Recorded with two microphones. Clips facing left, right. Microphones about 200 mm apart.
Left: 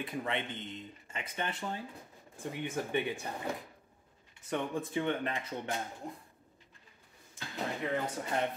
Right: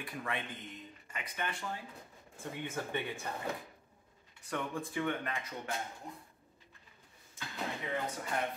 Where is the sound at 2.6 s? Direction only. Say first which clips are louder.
Left 5 dB; 15° left (ahead or behind).